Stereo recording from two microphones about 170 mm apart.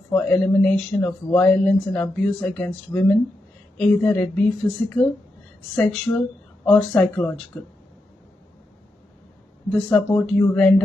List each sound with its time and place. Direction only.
0.1 s speech: 10° left (ahead or behind)
6.1 s speech: 20° left (ahead or behind)
9.7 s speech: 10° left (ahead or behind)